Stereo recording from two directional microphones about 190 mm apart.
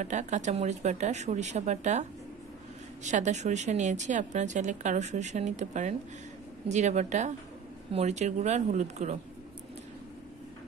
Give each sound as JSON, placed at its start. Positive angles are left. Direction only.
{"t": 0.0, "sound": "a woman's voice", "side_deg": -40}